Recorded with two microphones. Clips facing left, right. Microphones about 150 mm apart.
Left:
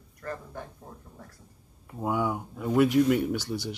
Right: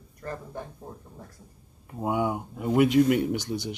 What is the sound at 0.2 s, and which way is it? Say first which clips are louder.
Speech: right 1 dB; 20° right (ahead or behind).